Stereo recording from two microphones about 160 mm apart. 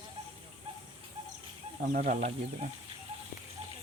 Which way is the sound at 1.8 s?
60° right (ahead or behind).